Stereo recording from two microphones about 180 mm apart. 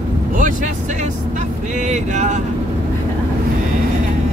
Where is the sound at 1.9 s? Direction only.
40° right (ahead or behind).